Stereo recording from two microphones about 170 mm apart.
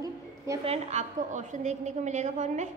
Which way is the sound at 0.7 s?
40° right (ahead or behind).